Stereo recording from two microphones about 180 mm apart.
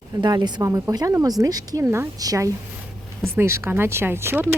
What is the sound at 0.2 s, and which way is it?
A woman's voice, 25° right (ahead or behind).